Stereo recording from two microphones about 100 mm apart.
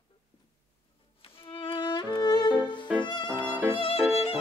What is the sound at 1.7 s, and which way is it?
Music, 50° left (ahead or behind).